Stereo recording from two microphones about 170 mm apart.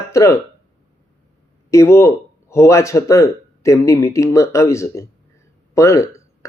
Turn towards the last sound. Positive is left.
turn(degrees=20)  # may be behind; listen again after turning